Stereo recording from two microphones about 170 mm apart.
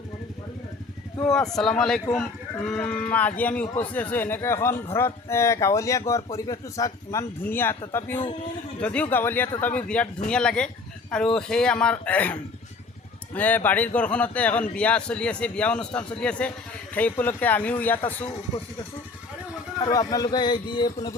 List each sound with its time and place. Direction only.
1.3 s a man's voice: centre (ahead or behind)
19.8 s a man's voice: 25° left (ahead or behind)